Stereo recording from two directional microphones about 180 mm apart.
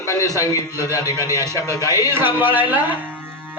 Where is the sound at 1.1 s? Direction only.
15° right (ahead or behind).